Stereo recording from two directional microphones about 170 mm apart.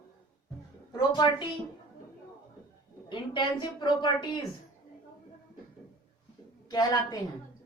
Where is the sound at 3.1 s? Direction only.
30° left (ahead or behind).